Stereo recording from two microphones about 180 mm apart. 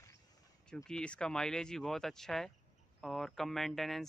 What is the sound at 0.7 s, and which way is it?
Speech, 5° left (ahead or behind).